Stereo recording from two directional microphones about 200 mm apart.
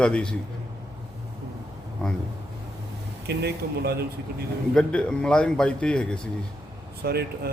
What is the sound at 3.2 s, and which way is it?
Speech, 55° right (ahead or behind).